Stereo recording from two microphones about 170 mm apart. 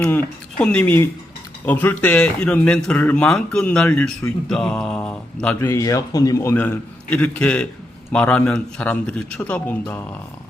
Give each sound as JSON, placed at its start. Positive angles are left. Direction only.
{"t": 0.0, "sound": "speech", "side_deg": 10}
{"t": 4.4, "sound": "mantra", "side_deg": 5}
{"t": 5.5, "sound": "speech", "side_deg": 15}